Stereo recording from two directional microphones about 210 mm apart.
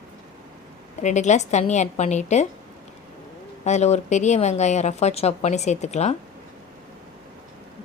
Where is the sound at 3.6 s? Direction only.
30° left (ahead or behind).